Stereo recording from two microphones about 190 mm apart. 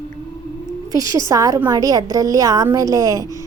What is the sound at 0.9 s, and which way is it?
A woman's voice, 15° right (ahead or behind).